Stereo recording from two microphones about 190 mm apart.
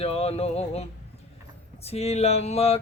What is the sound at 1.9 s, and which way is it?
Music, 35° left (ahead or behind).